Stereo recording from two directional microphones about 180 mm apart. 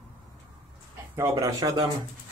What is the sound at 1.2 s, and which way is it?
Speech, 20° right (ahead or behind).